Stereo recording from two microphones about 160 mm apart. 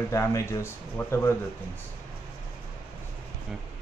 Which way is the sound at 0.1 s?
20° left (ahead or behind).